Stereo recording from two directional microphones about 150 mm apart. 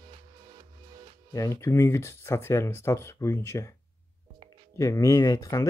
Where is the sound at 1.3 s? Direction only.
20° left (ahead or behind).